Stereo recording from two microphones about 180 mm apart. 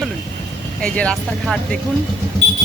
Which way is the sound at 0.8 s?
5° left (ahead or behind).